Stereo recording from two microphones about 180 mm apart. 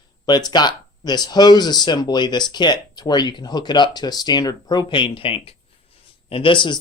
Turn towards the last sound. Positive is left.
turn(degrees=25)  # may be behind; listen again after turning